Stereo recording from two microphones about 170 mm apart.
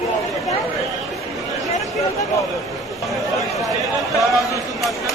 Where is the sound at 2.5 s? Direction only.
Centre (ahead or behind).